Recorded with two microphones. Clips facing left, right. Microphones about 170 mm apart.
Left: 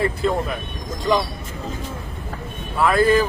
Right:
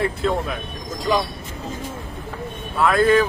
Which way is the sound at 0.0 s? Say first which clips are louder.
Left 1 dB; centre (ahead or behind).